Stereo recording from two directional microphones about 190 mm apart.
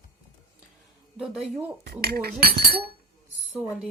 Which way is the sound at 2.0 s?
55° right (ahead or behind).